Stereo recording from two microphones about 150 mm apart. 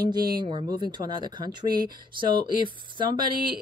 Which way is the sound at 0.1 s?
30° right (ahead or behind).